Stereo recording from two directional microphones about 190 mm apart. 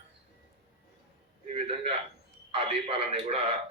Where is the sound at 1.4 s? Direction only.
30° right (ahead or behind).